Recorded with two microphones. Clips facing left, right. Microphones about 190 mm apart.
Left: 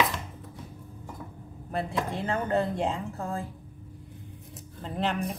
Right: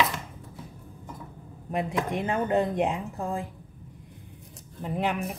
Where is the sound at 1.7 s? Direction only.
15° right (ahead or behind).